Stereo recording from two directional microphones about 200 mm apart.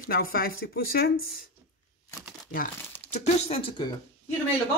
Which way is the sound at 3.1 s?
30° left (ahead or behind).